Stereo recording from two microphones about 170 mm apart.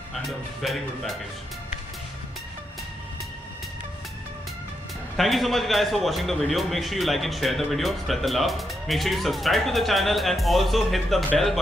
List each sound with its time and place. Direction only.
0.1 s a man's voice: centre (ahead or behind)
5.1 s a man's voice: centre (ahead or behind)